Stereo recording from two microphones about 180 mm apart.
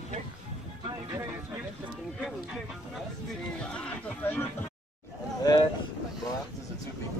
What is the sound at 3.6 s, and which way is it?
Speech, 5° left (ahead or behind).